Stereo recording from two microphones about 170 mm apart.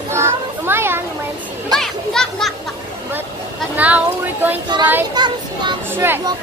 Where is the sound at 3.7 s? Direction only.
10° right (ahead or behind).